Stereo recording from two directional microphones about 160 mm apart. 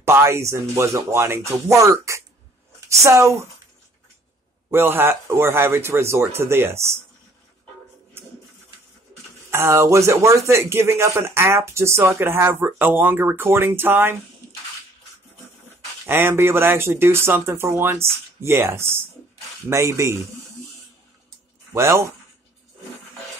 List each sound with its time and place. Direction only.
0.0 s speech: 15° right (ahead or behind)
4.6 s speech: 15° right (ahead or behind)
9.5 s speech: 15° right (ahead or behind)
16.1 s speech: 15° right (ahead or behind)
21.7 s speech: 15° right (ahead or behind)